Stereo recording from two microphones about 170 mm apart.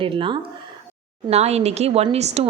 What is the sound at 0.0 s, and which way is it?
Speech, 30° right (ahead or behind).